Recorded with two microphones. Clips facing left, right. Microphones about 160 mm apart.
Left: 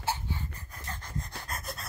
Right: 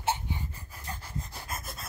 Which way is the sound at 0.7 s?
5° right (ahead or behind).